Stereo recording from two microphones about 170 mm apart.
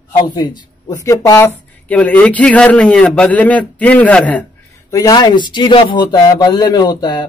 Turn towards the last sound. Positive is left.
turn(degrees=25)  # may be behind; listen again after turning